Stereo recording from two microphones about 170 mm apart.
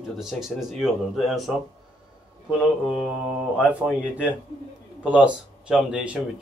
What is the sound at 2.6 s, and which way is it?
Speech, 5° left (ahead or behind).